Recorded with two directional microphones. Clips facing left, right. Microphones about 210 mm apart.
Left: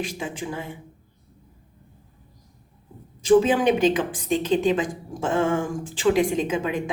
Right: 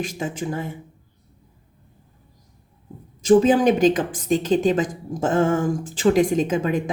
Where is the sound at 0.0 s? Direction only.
45° right (ahead or behind).